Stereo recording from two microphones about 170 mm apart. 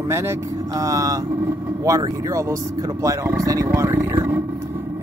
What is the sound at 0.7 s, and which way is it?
Speech, 20° right (ahead or behind).